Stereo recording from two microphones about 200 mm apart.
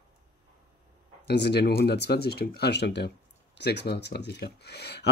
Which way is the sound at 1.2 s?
55° left (ahead or behind).